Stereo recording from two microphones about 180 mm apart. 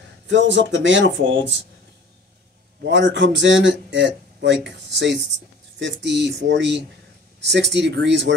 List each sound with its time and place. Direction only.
0.3 s speech: 90° right
2.8 s a man's voice: 80° right